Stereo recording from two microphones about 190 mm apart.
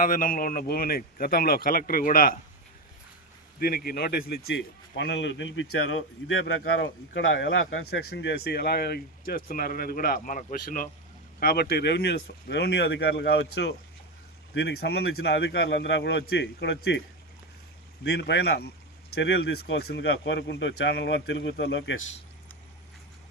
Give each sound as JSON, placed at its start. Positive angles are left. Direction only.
{"t": 0.0, "sound": "speech", "side_deg": 45}
{"t": 3.6, "sound": "speech", "side_deg": 50}
{"t": 7.9, "sound": "a man's voice", "side_deg": 60}
{"t": 18.0, "sound": "a man's voice", "side_deg": 65}